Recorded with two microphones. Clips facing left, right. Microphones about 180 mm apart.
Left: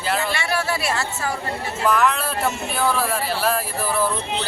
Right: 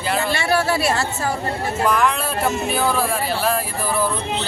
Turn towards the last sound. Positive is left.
turn(degrees=5)  # may be behind; listen again after turning